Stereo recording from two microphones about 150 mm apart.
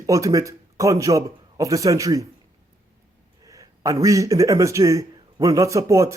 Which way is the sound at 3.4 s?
20° right (ahead or behind).